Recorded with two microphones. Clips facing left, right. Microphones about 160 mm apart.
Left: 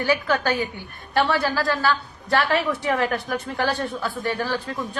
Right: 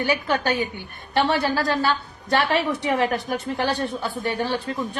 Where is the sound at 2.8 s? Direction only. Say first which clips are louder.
Right 1 dB; 20° right (ahead or behind).